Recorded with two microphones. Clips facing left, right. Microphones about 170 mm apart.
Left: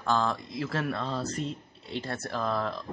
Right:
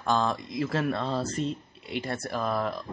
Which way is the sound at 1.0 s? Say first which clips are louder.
Right 3 dB; 35° right (ahead or behind).